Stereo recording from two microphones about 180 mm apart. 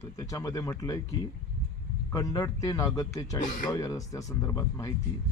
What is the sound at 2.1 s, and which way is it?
A man's voice, 20° left (ahead or behind).